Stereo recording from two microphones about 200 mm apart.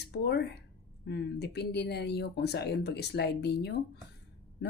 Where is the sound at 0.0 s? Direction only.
55° left (ahead or behind).